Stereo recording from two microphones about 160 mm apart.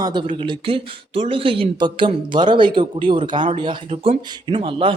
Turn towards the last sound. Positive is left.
turn(degrees=-30)  # may be behind; listen again after turning